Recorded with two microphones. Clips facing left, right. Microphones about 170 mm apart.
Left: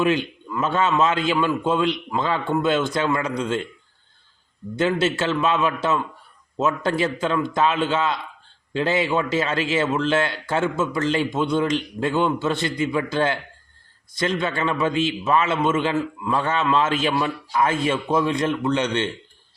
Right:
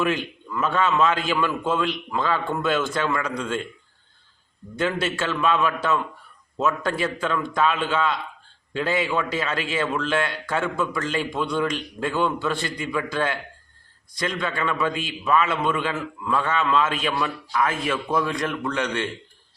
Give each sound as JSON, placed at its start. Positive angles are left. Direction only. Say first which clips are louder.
{"t": 0.5, "sound": "a man's voice", "louder": "left 1 dB", "side_deg": 20}
{"t": 4.8, "sound": "a man's voice", "louder": "left 4 dB", "side_deg": 20}